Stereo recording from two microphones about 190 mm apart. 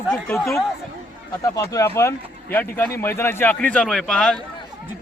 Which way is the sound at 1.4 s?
15° left (ahead or behind).